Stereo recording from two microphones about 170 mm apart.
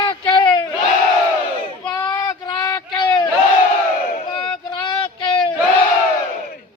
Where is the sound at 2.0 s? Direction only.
25° left (ahead or behind).